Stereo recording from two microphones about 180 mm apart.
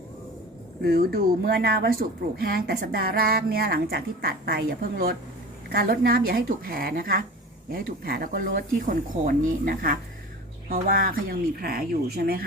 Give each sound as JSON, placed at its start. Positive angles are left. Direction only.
{"t": 0.8, "sound": "a woman's voice", "side_deg": -60}